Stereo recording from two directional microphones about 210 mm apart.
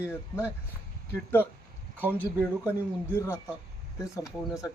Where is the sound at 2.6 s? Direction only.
10° left (ahead or behind).